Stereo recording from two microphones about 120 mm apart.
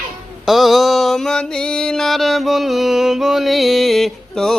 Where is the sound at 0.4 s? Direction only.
Centre (ahead or behind).